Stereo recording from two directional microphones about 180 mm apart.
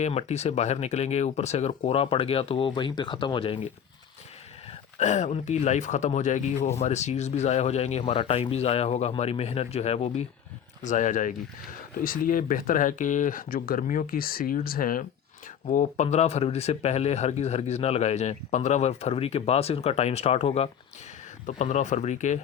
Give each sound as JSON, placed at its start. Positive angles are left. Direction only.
{"t": 0.0, "sound": "speech", "side_deg": 35}
{"t": 4.9, "sound": "speech", "side_deg": 40}